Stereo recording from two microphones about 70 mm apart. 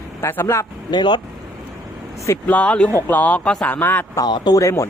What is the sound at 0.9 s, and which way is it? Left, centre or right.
Speech, left.